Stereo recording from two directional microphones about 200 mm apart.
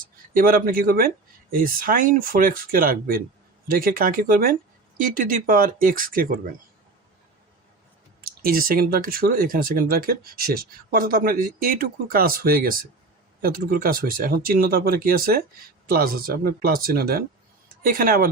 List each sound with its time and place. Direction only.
0.0 s speech: 45° right (ahead or behind)
8.2 s speech: 50° right (ahead or behind)